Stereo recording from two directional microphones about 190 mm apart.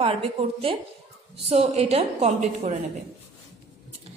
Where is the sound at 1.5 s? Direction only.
35° right (ahead or behind).